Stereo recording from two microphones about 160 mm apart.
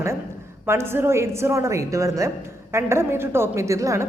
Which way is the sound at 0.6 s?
15° right (ahead or behind).